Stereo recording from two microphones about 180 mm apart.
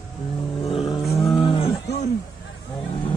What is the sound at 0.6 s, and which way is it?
Vehicle, 30° left (ahead or behind).